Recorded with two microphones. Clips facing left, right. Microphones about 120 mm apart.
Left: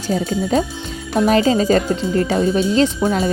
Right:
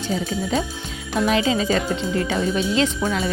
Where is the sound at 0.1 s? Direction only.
40° left (ahead or behind).